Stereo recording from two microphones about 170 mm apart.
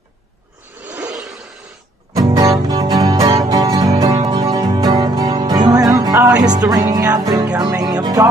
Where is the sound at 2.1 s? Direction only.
20° right (ahead or behind).